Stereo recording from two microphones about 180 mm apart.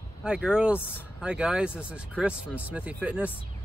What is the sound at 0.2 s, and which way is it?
Speech, 5° right (ahead or behind).